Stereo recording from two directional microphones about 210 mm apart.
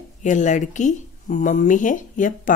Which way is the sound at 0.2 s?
35° left (ahead or behind).